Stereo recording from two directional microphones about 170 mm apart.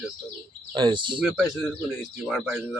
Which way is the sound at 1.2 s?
5° right (ahead or behind).